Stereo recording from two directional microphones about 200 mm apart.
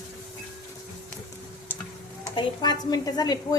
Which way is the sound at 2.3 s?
20° left (ahead or behind).